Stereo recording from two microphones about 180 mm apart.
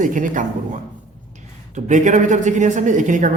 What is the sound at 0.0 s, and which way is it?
A woman's voice, 45° right (ahead or behind).